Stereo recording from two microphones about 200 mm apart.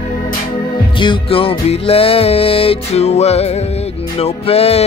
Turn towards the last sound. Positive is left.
turn(degrees=30)  # may be behind; listen again after turning